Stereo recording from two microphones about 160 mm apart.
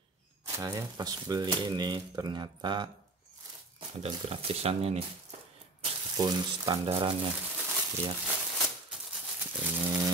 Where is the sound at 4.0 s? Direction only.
40° right (ahead or behind).